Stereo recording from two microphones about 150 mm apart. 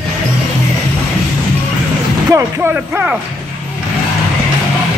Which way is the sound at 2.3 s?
20° right (ahead or behind).